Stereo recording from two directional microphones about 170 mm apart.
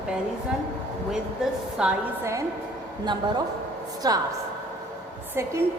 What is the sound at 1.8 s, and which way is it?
Speech, 5° right (ahead or behind).